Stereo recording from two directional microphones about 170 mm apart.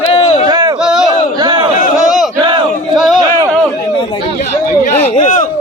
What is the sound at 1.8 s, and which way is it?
Battle cry, 50° left (ahead or behind).